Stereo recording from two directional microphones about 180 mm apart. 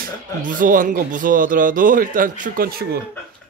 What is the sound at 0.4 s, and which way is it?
A man's voice, 50° right (ahead or behind).